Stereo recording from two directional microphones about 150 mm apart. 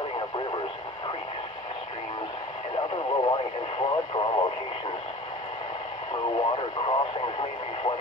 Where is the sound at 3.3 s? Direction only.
35° left (ahead or behind).